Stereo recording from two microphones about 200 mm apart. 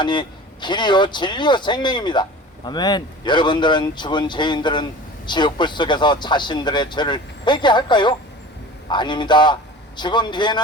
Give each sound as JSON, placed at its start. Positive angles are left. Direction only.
{"t": 0.0, "sound": "speech", "side_deg": 20}